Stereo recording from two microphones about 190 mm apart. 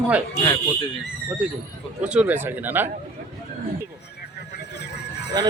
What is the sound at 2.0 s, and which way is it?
Speech, 5° right (ahead or behind).